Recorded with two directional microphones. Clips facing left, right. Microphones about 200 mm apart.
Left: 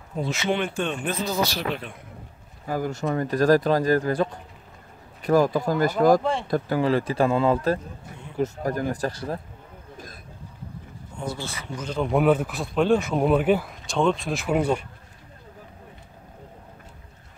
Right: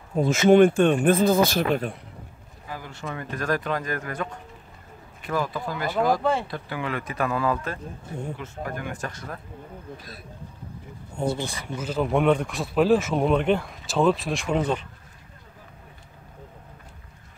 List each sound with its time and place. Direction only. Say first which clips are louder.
0.1 s speech: right 9 dB; 45° right (ahead or behind)
2.6 s speech: left 9 dB; 45° left (ahead or behind)
5.2 s speech: left 8 dB; 40° left (ahead or behind)
9.9 s speech: left 1 dB; 45° left (ahead or behind)
11.2 s speech: right 5 dB; 15° right (ahead or behind); by 14.9 s 10° left (ahead or behind)